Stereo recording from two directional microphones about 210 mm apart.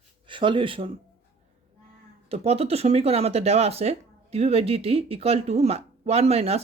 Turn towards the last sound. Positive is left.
turn(degrees=-30)  # may be behind; listen again after turning